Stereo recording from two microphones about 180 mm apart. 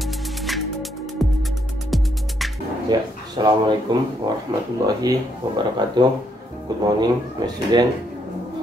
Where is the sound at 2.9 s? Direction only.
25° right (ahead or behind).